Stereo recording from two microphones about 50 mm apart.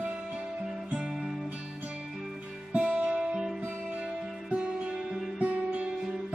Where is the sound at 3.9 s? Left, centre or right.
Right.